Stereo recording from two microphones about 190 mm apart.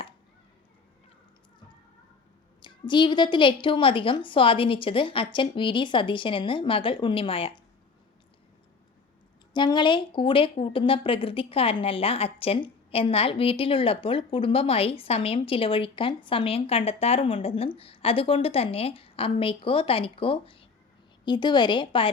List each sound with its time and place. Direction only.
2.6 s speech: 25° left (ahead or behind)
9.5 s speech: 25° left (ahead or behind)